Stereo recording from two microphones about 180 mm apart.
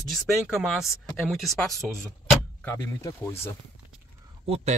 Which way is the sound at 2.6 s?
15° left (ahead or behind).